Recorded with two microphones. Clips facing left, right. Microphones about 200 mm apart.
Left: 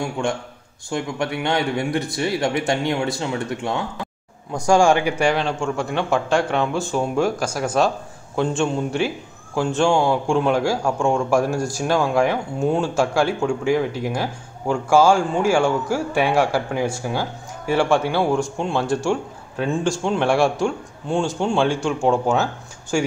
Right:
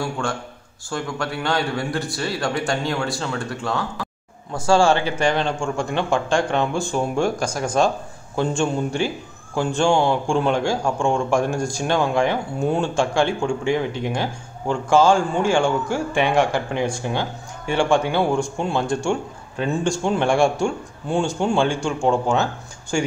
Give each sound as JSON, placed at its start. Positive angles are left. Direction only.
{"t": 0.0, "sound": "a man's voice", "side_deg": 20}